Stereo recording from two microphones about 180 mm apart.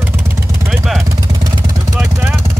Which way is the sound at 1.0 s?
20° right (ahead or behind).